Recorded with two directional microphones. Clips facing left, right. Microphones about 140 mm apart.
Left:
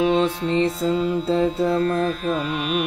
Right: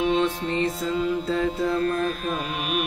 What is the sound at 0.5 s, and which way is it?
Mantra, 25° left (ahead or behind).